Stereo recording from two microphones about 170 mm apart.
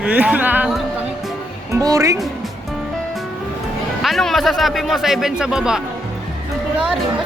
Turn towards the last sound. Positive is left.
turn(degrees=-5)  # may be behind; listen again after turning